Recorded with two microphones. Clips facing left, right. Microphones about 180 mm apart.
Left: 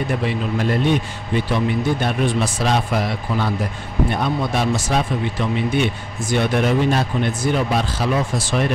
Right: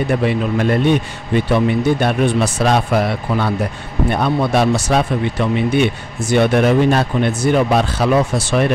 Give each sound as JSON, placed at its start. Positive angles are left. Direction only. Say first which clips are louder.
{"t": 0.6, "sound": "a man's voice", "louder": "right 3 dB", "side_deg": -60}